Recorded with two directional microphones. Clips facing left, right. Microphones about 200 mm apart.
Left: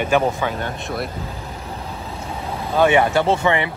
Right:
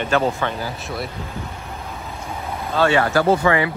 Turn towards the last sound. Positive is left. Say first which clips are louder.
# right 1 dB
turn(degrees=25)  # may be behind; listen again after turning